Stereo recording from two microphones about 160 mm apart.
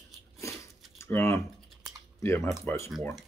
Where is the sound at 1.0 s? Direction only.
15° left (ahead or behind).